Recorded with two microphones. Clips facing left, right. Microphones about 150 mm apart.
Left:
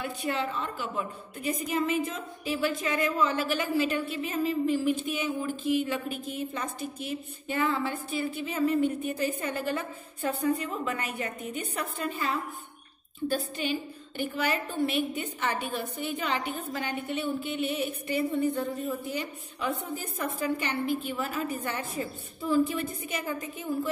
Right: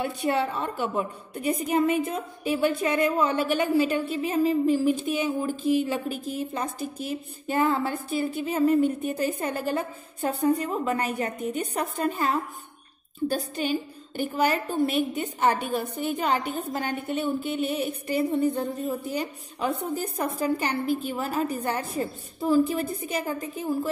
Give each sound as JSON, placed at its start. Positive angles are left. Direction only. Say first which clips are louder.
{"t": 0.6, "sound": "a woman's voice", "louder": "right 5 dB", "side_deg": -50}
{"t": 1.5, "sound": "a woman's voice", "louder": "right 5 dB", "side_deg": -40}